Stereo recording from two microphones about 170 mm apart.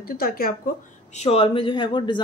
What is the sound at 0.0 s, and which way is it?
Speech, 60° left (ahead or behind).